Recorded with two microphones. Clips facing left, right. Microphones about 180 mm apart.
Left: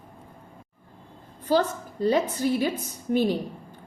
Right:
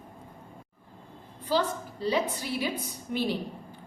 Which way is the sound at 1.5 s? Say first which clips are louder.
Left 4 dB; 45° left (ahead or behind).